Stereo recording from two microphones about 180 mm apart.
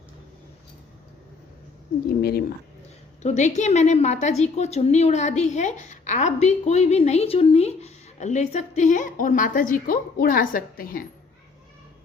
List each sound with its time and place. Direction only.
2.0 s speech: 60° left (ahead or behind)
3.2 s a woman's voice: 40° left (ahead or behind)